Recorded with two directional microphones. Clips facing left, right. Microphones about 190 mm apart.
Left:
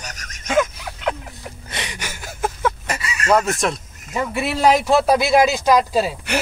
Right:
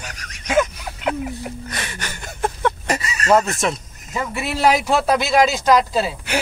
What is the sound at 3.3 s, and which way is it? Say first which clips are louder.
Speech: right 1 dB; centre (ahead or behind).